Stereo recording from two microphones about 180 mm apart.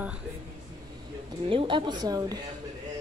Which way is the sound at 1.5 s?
30° right (ahead or behind).